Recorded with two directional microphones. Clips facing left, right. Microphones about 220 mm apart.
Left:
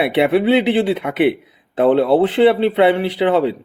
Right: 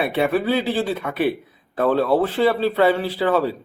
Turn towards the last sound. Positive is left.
turn(degrees=20)  # may be behind; listen again after turning